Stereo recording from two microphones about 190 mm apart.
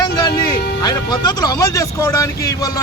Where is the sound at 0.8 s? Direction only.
20° left (ahead or behind).